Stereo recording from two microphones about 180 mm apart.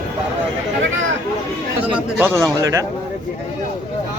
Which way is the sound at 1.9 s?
10° right (ahead or behind).